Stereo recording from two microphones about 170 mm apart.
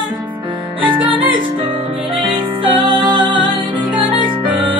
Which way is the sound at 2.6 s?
30° right (ahead or behind).